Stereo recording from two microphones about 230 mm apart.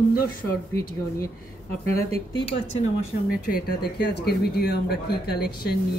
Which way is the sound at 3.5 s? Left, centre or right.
Left.